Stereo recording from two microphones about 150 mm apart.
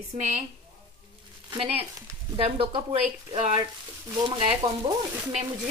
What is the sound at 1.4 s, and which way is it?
Speech, 40° right (ahead or behind).